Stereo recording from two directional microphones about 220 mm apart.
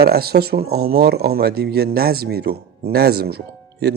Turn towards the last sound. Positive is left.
turn(degrees=-45)  # may be behind; listen again after turning